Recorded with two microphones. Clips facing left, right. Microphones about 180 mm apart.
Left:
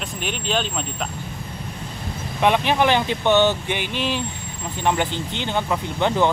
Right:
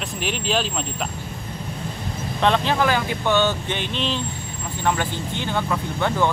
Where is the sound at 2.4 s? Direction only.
15° left (ahead or behind).